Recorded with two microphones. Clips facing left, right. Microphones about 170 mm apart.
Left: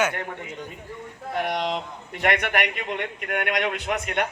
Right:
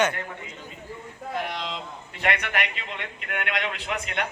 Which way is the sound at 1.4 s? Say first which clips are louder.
Left 7 dB; 65° left (ahead or behind).